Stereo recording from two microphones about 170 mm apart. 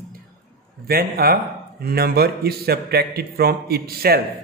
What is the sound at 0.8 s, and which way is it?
A man's voice, 65° right (ahead or behind).